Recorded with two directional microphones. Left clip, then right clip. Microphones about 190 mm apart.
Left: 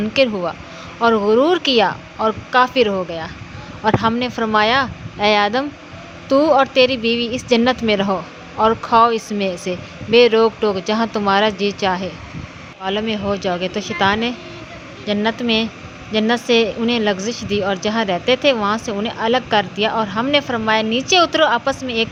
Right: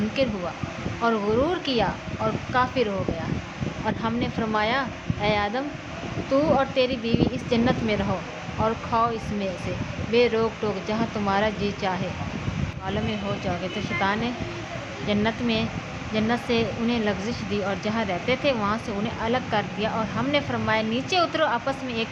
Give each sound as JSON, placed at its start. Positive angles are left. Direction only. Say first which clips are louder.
{"t": 0.1, "sound": "a woman's voice", "louder": "left 13 dB", "side_deg": 40}